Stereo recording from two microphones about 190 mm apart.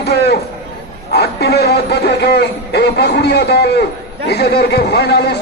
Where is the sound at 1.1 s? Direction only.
60° left (ahead or behind).